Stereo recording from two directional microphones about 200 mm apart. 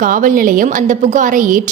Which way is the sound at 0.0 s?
40° right (ahead or behind).